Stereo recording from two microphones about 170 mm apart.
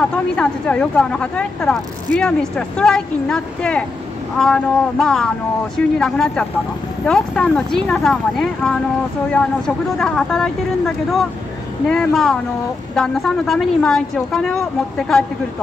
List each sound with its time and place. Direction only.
0.1 s speech: 5° left (ahead or behind)
9.9 s speech: 5° left (ahead or behind)